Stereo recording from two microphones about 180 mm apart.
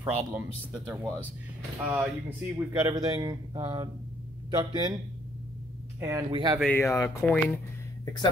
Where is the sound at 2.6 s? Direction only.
20° right (ahead or behind).